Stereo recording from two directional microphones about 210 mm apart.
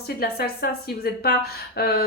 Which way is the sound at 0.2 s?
50° left (ahead or behind).